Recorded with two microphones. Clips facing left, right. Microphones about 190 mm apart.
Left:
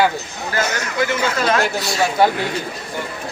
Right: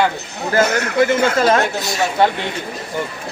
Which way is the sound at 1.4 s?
30° right (ahead or behind).